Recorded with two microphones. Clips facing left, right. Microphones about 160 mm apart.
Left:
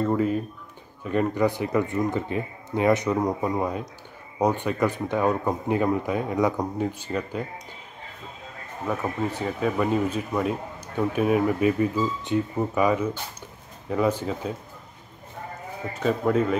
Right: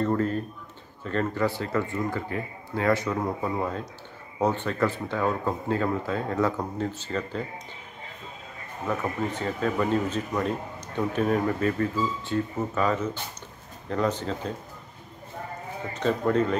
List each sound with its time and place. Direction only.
0.0 s speech: 10° left (ahead or behind)
8.8 s speech: 10° left (ahead or behind)
15.9 s a man's voice: 5° left (ahead or behind)